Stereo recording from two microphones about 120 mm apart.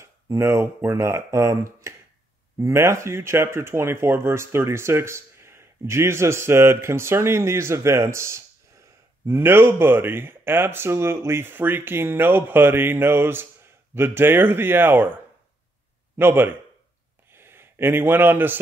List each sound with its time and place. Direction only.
0.0 s speech: 20° right (ahead or behind)
16.2 s speech: 15° right (ahead or behind)
17.3 s a sound: 20° right (ahead or behind)